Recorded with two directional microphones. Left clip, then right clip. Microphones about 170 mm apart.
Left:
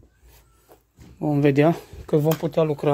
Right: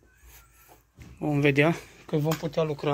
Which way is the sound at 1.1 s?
30° left (ahead or behind).